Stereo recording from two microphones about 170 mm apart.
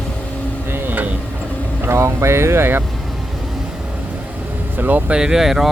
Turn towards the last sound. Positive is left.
turn(degrees=0)  # may be behind; listen again after turning